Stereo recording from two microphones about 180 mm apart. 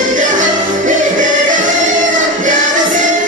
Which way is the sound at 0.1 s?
45° right (ahead or behind).